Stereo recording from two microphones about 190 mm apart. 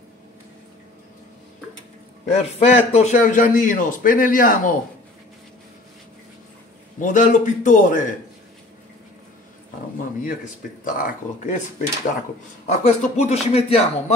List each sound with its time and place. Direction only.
2.2 s a man's voice: 35° left (ahead or behind)
7.0 s a man's voice: 45° left (ahead or behind)
10.2 s a man's voice: 45° left (ahead or behind)
12.8 s speech: 40° left (ahead or behind)